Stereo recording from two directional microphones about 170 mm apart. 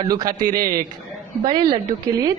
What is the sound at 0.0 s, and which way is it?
A woman's voice, 20° right (ahead or behind).